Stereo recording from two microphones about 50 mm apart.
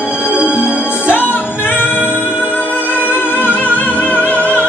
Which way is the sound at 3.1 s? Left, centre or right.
Left.